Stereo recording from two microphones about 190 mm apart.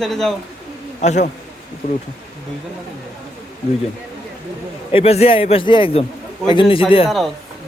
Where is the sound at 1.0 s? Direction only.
40° left (ahead or behind).